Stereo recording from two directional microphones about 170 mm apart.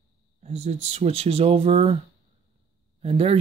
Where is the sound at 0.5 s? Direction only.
40° right (ahead or behind).